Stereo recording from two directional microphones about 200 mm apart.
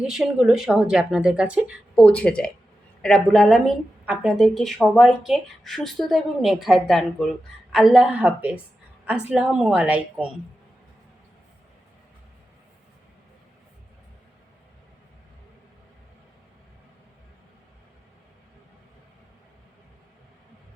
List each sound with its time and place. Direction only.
0.0 s a woman's voice: centre (ahead or behind)
2.0 s a woman's voice: 5° left (ahead or behind)